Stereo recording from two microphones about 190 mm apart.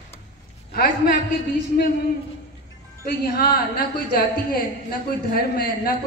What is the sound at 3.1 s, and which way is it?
A woman's voice, 50° left (ahead or behind).